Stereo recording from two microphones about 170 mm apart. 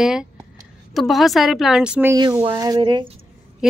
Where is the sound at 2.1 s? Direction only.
25° right (ahead or behind).